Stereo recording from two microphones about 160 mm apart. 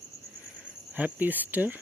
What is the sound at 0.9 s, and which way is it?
Speech, 10° right (ahead or behind).